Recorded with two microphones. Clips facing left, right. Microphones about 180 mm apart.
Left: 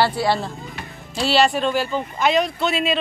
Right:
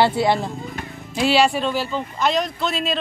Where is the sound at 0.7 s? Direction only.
50° right (ahead or behind).